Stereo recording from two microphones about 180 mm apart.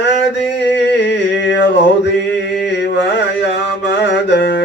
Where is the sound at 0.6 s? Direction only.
80° left.